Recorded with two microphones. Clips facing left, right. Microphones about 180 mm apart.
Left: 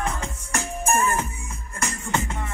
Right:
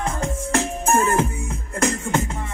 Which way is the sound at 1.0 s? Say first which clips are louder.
Right 5 dB; 90° right.